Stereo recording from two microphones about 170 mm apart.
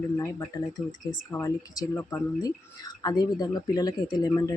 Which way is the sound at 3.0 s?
25° left (ahead or behind).